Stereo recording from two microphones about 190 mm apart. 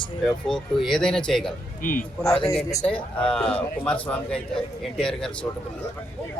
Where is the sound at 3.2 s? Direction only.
5° left (ahead or behind).